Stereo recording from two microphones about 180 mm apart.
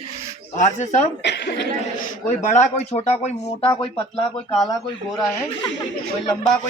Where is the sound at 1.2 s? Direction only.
70° left (ahead or behind).